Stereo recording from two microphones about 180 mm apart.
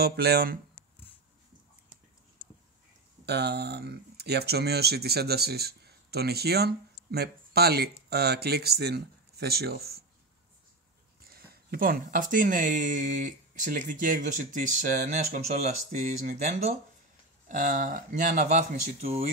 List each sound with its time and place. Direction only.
0.0 s speech: 60° right (ahead or behind)
3.3 s speech: 65° right (ahead or behind)
11.2 s speech: 55° right (ahead or behind); by 16.7 s 40° right (ahead or behind)
17.5 s speech: 50° right (ahead or behind)